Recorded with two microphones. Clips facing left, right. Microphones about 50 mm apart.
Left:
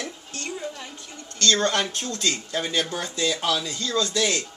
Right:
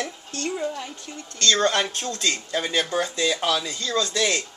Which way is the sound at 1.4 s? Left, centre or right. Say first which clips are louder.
Right 1 dB; centre.